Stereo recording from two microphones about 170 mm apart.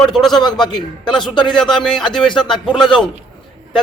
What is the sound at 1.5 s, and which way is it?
A man's voice, 5° left (ahead or behind).